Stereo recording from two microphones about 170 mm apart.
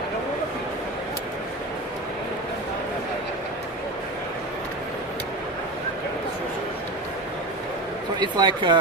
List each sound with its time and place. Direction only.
8.2 s speech: 25° right (ahead or behind)